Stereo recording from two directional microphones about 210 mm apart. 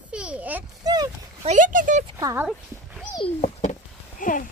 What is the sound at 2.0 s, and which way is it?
Speech, 15° right (ahead or behind).